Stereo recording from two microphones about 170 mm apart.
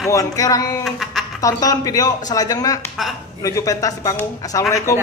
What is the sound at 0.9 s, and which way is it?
Speech, centre (ahead or behind).